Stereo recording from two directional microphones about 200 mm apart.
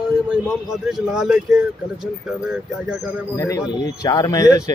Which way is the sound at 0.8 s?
5° right (ahead or behind).